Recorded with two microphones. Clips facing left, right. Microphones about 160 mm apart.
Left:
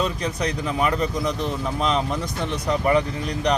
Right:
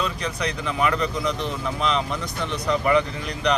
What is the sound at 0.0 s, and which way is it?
Speech, 40° left (ahead or behind).